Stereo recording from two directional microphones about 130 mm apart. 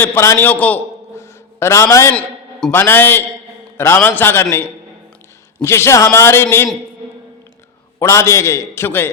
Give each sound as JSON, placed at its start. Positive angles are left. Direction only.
{"t": 0.0, "sound": "a man's voice", "side_deg": 20}
{"t": 2.1, "sound": "a sound", "side_deg": 5}
{"t": 2.7, "sound": "a man's voice", "side_deg": 15}
{"t": 7.9, "sound": "a man's voice", "side_deg": 20}